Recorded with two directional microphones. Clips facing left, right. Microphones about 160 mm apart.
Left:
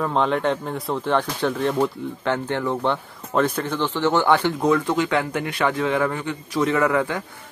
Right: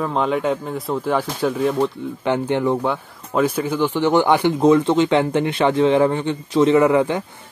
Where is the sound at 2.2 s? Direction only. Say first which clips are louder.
Right 5 dB; 15° right (ahead or behind).